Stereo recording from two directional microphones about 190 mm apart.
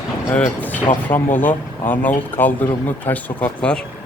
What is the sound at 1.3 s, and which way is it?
Speech, 10° left (ahead or behind).